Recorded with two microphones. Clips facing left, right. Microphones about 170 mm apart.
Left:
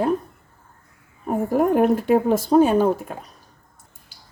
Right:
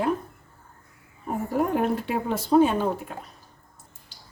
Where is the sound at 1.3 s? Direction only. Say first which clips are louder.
Left 6 dB; 50° left (ahead or behind).